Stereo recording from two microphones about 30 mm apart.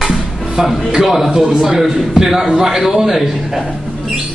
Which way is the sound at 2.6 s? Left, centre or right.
Right.